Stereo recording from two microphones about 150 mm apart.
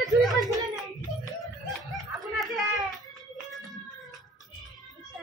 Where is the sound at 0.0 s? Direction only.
Centre (ahead or behind).